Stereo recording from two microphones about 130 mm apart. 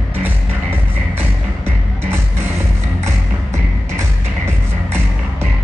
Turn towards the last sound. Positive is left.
turn(degrees=-20)  # may be behind; listen again after turning